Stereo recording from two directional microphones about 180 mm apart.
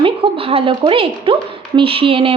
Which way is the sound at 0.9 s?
30° right (ahead or behind).